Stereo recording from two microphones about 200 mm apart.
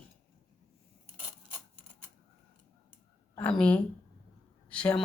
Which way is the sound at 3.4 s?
5° left (ahead or behind).